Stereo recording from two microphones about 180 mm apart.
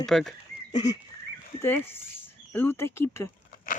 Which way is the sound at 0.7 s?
25° left (ahead or behind).